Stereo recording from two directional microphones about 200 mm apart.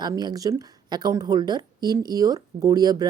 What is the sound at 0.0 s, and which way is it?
A woman's voice, 20° right (ahead or behind).